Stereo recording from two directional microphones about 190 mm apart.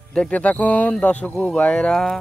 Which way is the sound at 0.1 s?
5° left (ahead or behind).